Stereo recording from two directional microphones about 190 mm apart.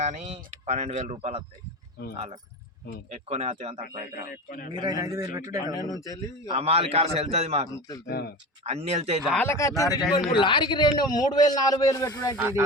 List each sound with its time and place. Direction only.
0.0 s speech: 35° right (ahead or behind)
3.1 s speech: 30° right (ahead or behind)
4.3 s a man's voice: 45° left (ahead or behind)
4.7 s speech: 20° right (ahead or behind)
5.7 s speech: 20° left (ahead or behind)
6.5 s speech: 30° right (ahead or behind)
8.0 s speech: 55° left (ahead or behind)
8.6 s speech: 30° right (ahead or behind)
9.3 s speech: 10° left (ahead or behind)
12.4 s music: 10° right (ahead or behind)